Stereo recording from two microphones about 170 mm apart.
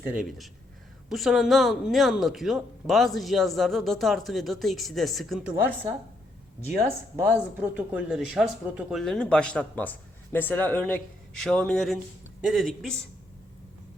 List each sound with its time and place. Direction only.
0.1 s speech: centre (ahead or behind)
7.2 s a woman's voice: 15° right (ahead or behind)